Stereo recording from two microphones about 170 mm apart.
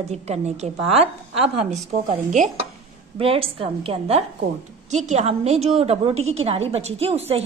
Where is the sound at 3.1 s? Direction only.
35° right (ahead or behind).